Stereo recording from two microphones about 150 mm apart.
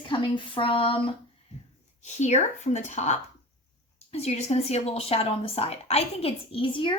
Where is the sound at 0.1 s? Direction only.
35° left (ahead or behind).